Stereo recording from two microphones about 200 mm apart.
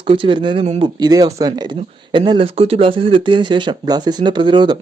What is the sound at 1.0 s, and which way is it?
Speech, 20° right (ahead or behind).